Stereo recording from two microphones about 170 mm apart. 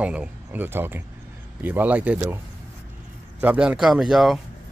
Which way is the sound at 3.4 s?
5° right (ahead or behind).